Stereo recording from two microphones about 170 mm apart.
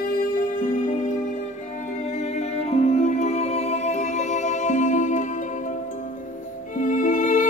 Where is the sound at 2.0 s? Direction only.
40° left (ahead or behind).